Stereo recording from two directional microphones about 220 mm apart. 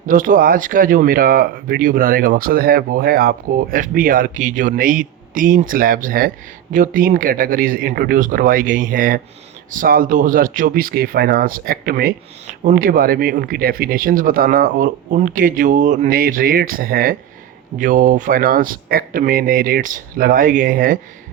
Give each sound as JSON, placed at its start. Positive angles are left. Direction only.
{"t": 0.1, "sound": "speech", "side_deg": -40}